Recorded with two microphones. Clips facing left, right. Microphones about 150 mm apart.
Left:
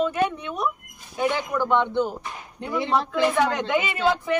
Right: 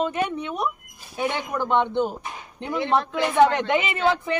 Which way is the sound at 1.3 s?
20° right (ahead or behind).